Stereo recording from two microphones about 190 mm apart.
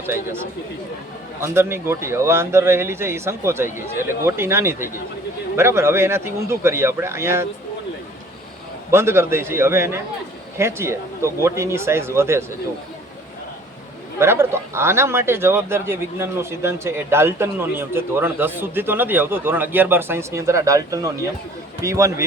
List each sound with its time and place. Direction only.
1.4 s speech: 15° right (ahead or behind)
8.9 s speech: 15° right (ahead or behind)
14.2 s speech: 15° right (ahead or behind)